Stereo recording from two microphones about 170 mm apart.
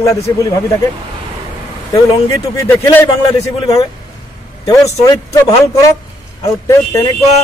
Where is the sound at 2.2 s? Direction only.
15° left (ahead or behind).